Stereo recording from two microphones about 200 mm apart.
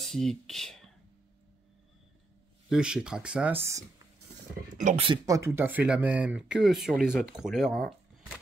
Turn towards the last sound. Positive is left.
turn(degrees=0)  # may be behind; listen again after turning